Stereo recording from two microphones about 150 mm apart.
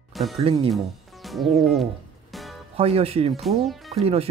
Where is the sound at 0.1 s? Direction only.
Centre (ahead or behind).